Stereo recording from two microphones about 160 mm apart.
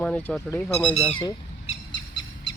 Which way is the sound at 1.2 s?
30° left (ahead or behind).